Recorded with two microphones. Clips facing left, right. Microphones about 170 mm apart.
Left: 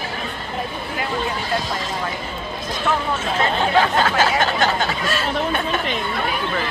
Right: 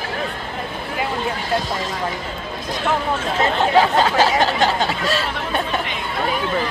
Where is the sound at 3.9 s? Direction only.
35° right (ahead or behind).